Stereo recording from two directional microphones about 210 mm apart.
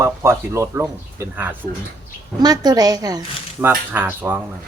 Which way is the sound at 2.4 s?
20° right (ahead or behind).